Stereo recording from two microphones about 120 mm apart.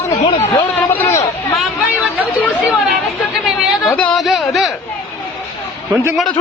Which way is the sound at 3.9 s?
10° left (ahead or behind).